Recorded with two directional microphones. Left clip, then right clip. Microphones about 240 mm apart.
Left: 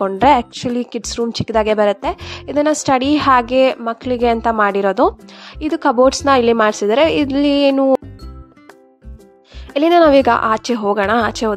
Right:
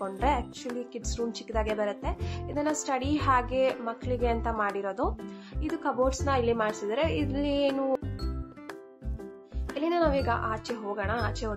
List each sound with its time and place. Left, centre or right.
0.1 s a woman's voice: left
9.8 s a woman's voice: left